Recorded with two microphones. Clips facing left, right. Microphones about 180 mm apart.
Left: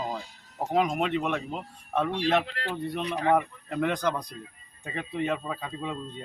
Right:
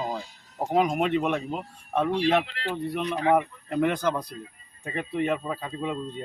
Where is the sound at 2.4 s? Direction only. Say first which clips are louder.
Left 2 dB; 45° left (ahead or behind).